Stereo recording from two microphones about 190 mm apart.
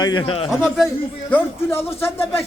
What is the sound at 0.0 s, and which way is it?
Speech, 25° left (ahead or behind).